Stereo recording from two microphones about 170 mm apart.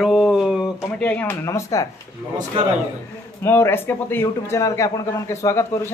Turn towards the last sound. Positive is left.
turn(degrees=15)  # may be behind; listen again after turning